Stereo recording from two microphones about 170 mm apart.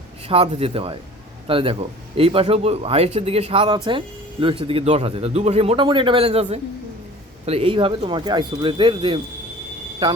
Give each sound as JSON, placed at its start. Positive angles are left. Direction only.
{"t": 0.3, "sound": "speech", "side_deg": -35}